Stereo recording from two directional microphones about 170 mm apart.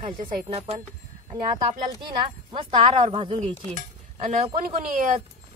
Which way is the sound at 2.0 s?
25° right (ahead or behind).